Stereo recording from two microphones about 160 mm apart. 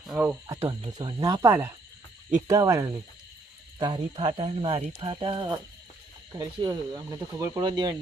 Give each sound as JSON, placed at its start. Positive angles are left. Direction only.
{"t": 0.1, "sound": "cricket", "side_deg": -5}
{"t": 0.9, "sound": "speech", "side_deg": -25}